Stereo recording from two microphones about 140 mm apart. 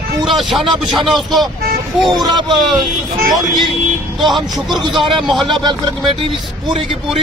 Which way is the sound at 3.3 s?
Centre (ahead or behind).